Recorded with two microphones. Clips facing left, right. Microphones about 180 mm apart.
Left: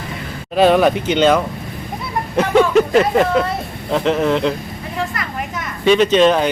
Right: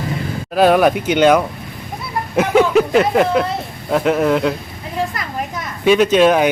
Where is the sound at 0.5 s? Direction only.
5° right (ahead or behind).